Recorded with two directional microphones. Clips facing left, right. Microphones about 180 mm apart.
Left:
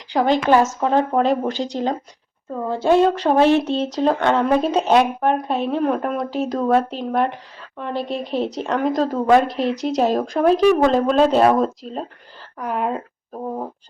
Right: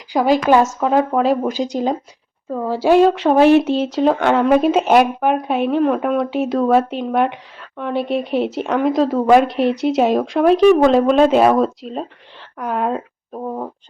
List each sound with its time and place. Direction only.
0.2 s speech: 10° right (ahead or behind)
0.6 s speech: centre (ahead or behind)
1.5 s speech: 15° right (ahead or behind)
2.5 s speech: 5° right (ahead or behind)